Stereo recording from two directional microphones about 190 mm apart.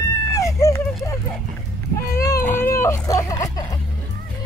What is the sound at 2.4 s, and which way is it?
Speech, 10° left (ahead or behind).